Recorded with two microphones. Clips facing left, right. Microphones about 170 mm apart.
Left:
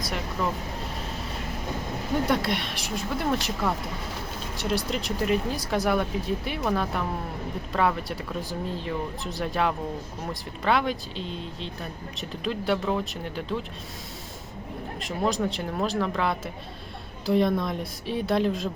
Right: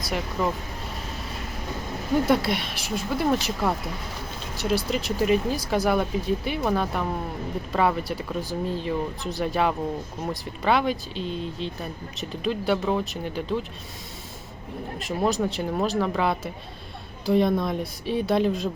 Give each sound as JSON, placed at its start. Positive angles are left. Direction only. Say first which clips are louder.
{"t": 2.2, "sound": "speech", "louder": "right 3 dB", "side_deg": -5}
{"t": 14.9, "sound": "speech", "louder": "right 2 dB", "side_deg": -5}